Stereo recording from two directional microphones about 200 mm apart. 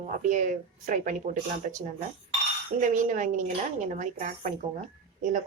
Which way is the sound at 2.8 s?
40° right (ahead or behind).